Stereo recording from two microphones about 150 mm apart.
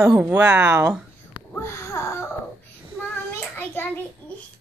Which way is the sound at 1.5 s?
20° left (ahead or behind).